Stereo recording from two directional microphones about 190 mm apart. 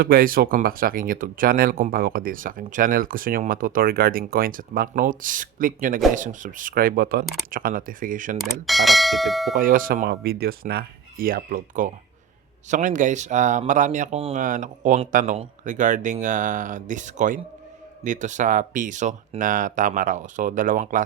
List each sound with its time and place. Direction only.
0.0 s speech: 50° right (ahead or behind)
8.4 s speech: centre (ahead or behind)
9.6 s speech: 45° right (ahead or behind)